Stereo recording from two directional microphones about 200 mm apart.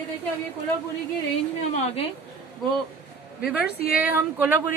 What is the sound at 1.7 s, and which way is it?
Speech, 30° left (ahead or behind).